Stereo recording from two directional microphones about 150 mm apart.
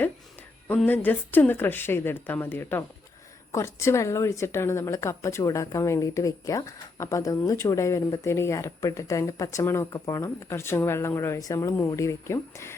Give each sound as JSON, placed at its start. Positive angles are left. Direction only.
{"t": 0.9, "sound": "a woman's voice", "side_deg": 10}